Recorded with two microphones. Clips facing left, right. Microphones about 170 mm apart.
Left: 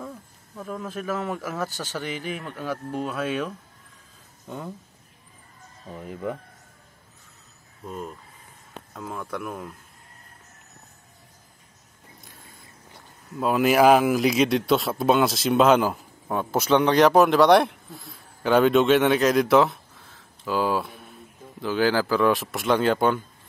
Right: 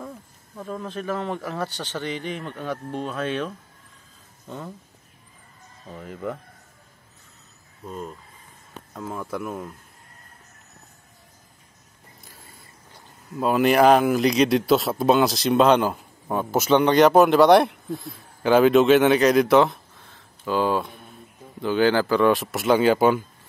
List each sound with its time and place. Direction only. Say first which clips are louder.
0.6 s speech: right 1 dB; 5° left (ahead or behind)
5.9 s speech: even; 15° left (ahead or behind)
7.8 s speech: even; 5° left (ahead or behind)
13.4 s speech: right 1 dB; centre (ahead or behind)